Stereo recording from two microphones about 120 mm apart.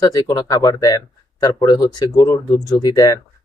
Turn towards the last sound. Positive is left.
turn(degrees=30)  # may be behind; listen again after turning